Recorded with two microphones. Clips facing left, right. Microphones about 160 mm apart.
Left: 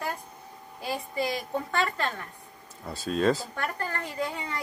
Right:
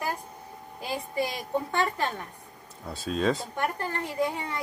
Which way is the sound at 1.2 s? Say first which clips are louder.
Right 1 dB; 15° right (ahead or behind).